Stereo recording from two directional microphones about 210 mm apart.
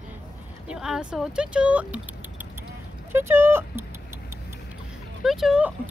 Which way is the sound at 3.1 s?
10° right (ahead or behind).